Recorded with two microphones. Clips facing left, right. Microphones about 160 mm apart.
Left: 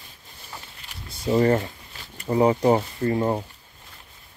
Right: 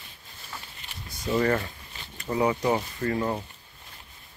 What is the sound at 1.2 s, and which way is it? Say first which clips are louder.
Speech: left 5 dB; 30° left (ahead or behind).